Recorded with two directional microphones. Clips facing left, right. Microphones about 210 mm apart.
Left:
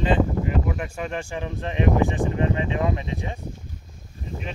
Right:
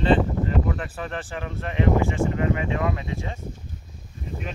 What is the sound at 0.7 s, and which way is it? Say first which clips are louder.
Speech: left 1 dB; 15° left (ahead or behind).